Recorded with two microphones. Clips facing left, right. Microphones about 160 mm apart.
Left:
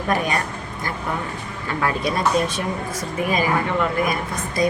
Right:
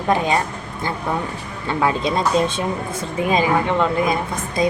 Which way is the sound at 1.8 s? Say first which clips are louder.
Right 2 dB; 25° right (ahead or behind).